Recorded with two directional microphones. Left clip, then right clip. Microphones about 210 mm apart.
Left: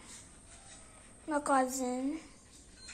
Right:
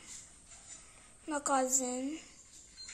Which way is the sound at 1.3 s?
20° right (ahead or behind).